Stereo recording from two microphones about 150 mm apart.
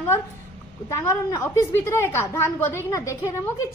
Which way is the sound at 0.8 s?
20° left (ahead or behind).